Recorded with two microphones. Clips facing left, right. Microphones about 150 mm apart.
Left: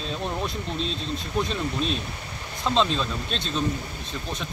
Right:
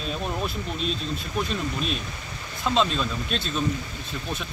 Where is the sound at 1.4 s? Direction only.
30° left (ahead or behind).